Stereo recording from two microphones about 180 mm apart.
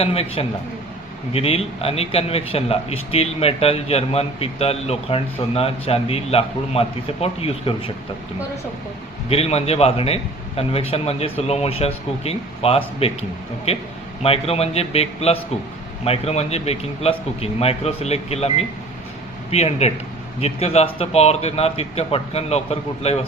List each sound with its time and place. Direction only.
0.0 s speech: 35° left (ahead or behind)
9.3 s speech: 35° left (ahead or behind)